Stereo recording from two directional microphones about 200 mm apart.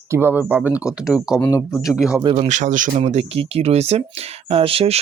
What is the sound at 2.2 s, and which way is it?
Speech, 30° right (ahead or behind).